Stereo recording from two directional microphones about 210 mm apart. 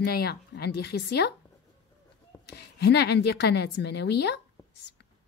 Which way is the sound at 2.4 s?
50° left (ahead or behind).